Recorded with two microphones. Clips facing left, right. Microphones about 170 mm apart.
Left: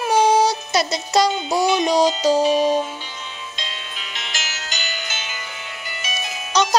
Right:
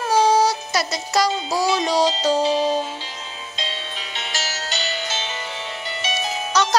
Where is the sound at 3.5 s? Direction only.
30° right (ahead or behind).